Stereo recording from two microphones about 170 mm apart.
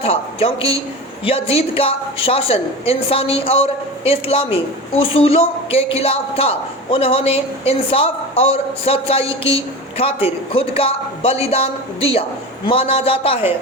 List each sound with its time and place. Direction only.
0.0 s a woman's voice: 35° left (ahead or behind)